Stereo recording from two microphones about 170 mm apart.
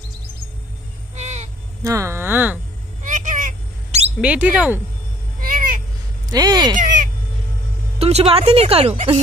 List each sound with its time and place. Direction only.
1.1 s a sound: 40° right (ahead or behind)
1.8 s speech: 15° right (ahead or behind)
3.0 s a sound: 50° right (ahead or behind)
4.2 s speech: 10° right (ahead or behind)
5.4 s cat: 55° right (ahead or behind)
6.3 s speech: 25° right (ahead or behind)
8.0 s speech: 35° right (ahead or behind)